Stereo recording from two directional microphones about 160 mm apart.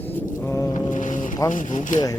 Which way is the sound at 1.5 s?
55° left (ahead or behind).